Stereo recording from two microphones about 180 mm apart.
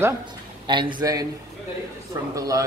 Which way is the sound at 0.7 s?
25° right (ahead or behind).